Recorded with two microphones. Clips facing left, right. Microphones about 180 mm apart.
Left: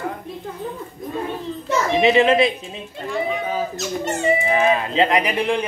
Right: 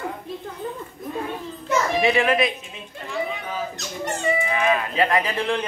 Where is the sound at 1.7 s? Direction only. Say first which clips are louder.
Left 3 dB; 25° left (ahead or behind).